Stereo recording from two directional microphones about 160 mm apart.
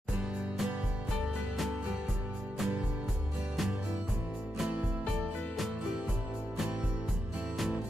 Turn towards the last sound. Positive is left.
turn(degrees=0)  # may be behind; listen again after turning